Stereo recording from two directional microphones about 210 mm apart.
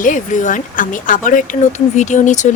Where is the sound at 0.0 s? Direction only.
35° left (ahead or behind).